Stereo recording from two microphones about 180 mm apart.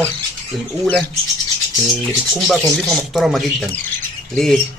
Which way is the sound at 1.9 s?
Centre (ahead or behind).